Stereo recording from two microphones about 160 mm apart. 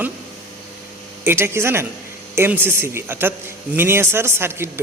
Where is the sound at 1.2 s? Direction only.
15° right (ahead or behind).